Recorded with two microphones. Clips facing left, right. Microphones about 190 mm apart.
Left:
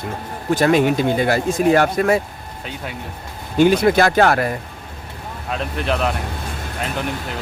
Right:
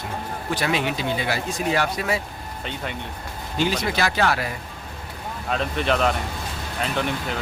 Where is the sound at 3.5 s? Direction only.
55° left (ahead or behind).